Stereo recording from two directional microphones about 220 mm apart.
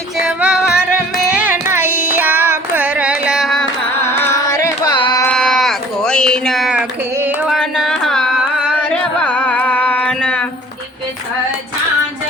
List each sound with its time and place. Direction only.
0.2 s carnatic music: 5° right (ahead or behind); by 5.2 s 20° left (ahead or behind)
5.2 s sheep: 5° left (ahead or behind)
9.2 s carnatic music: 5° left (ahead or behind)